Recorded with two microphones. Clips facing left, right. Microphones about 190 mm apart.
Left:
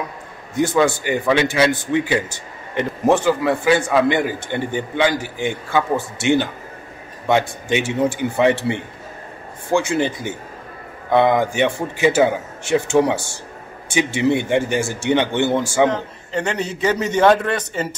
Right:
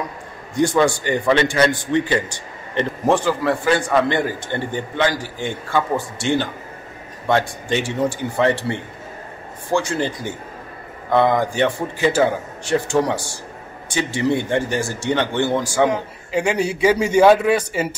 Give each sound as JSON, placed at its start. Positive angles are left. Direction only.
{"t": 0.6, "sound": "a man's voice", "side_deg": 5}
{"t": 9.8, "sound": "a man's voice", "side_deg": 20}
{"t": 15.9, "sound": "a man's voice", "side_deg": -10}